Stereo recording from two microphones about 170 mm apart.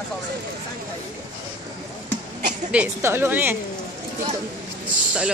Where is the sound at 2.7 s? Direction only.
10° right (ahead or behind).